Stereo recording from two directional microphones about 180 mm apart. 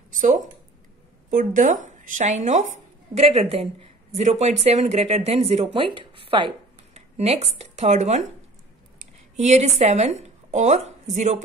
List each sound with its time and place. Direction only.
0.1 s speech: 45° right (ahead or behind)